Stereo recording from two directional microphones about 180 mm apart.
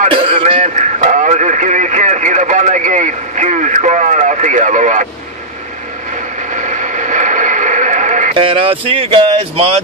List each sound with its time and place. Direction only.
0.1 s radio: 30° right (ahead or behind)
6.5 s radio: 45° right (ahead or behind)
8.4 s speech: 30° right (ahead or behind)